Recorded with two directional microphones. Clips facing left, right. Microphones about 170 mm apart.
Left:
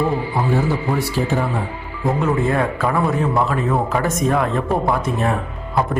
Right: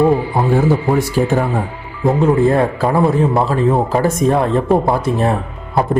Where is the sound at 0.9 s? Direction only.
45° right (ahead or behind).